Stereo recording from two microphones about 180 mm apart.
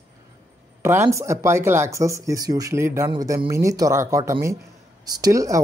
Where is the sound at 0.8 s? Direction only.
15° right (ahead or behind).